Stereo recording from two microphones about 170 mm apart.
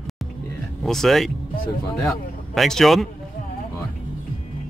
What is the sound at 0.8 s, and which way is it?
A man's voice, centre (ahead or behind).